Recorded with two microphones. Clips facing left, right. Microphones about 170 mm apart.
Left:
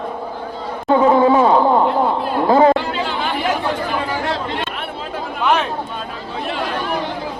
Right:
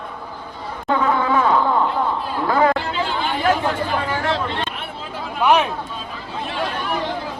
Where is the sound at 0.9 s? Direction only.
25° left (ahead or behind).